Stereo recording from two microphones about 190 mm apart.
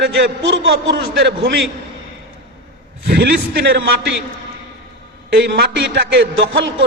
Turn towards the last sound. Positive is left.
turn(degrees=-80)